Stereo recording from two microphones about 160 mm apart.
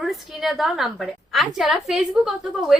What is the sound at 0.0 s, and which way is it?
A woman's voice, centre (ahead or behind).